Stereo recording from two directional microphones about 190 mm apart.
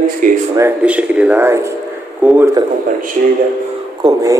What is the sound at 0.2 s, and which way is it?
Speech, 45° right (ahead or behind).